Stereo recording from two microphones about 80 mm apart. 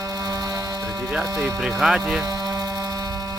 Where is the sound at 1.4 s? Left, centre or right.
Centre.